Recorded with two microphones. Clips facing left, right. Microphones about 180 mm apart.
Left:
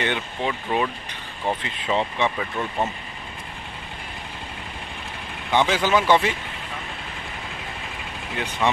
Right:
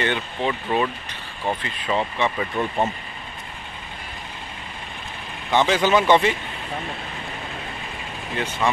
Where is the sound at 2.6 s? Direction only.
15° right (ahead or behind).